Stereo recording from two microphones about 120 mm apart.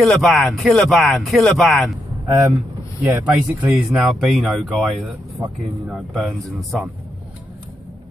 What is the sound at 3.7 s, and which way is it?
Speech, 5° right (ahead or behind).